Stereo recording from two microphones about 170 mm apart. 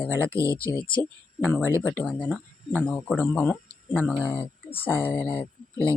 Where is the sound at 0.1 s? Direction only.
15° right (ahead or behind).